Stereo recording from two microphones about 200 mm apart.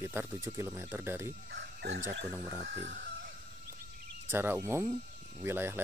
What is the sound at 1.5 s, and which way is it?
Speech, 60° right (ahead or behind).